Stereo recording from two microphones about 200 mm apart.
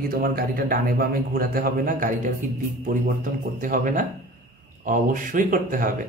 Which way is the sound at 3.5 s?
40° right (ahead or behind).